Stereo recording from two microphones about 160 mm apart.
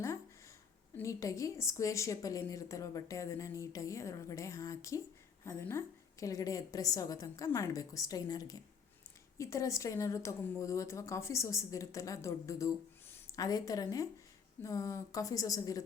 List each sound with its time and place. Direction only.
0.9 s a woman's voice: 20° left (ahead or behind)